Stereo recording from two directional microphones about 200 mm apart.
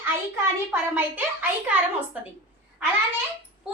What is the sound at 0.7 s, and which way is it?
A child's voice, 10° right (ahead or behind).